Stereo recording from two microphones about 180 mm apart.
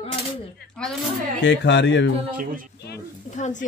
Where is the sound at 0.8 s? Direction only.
Centre (ahead or behind).